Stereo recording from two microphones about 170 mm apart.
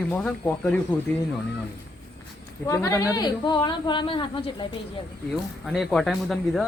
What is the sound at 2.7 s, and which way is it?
Speech, 15° left (ahead or behind).